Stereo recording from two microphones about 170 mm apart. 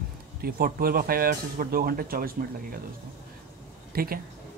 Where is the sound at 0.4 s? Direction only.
60° right (ahead or behind).